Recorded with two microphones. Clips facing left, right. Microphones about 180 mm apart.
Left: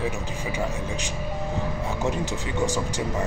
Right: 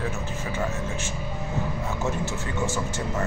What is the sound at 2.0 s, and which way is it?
Speech, 15° left (ahead or behind).